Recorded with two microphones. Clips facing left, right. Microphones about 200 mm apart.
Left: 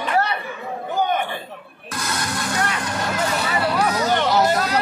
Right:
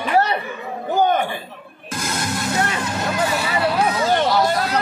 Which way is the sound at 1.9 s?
25° right (ahead or behind).